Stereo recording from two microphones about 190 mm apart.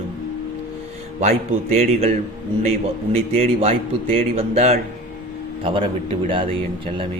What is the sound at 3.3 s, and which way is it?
A man's voice, 30° right (ahead or behind).